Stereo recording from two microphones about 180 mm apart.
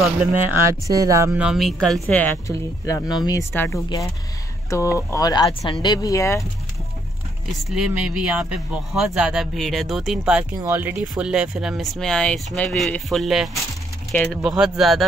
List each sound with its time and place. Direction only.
0.0 s speech: 5° right (ahead or behind); by 6.4 s 15° left (ahead or behind)
7.7 s speech: 5° right (ahead or behind)